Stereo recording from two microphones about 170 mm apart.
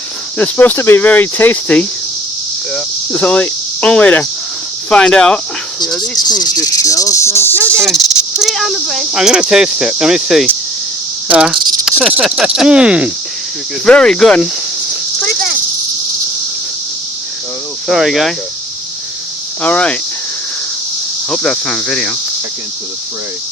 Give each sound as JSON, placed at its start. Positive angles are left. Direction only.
{"t": 0.3, "sound": "speech", "side_deg": 10}
{"t": 2.7, "sound": "cricket", "side_deg": 10}
{"t": 4.9, "sound": "speech", "side_deg": 5}
{"t": 6.2, "sound": "cricket", "side_deg": 25}
{"t": 7.6, "sound": "insect", "side_deg": -15}
{"t": 7.9, "sound": "speech", "side_deg": 0}
{"t": 17.8, "sound": "speech", "side_deg": 0}
{"t": 19.6, "sound": "speech", "side_deg": 10}
{"t": 21.2, "sound": "speech", "side_deg": 5}